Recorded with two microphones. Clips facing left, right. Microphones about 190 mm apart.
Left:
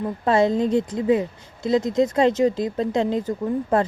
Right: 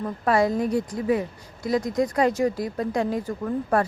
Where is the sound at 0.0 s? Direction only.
25° left (ahead or behind).